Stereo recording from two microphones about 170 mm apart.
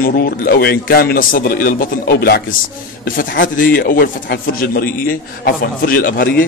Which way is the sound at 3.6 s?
55° left (ahead or behind).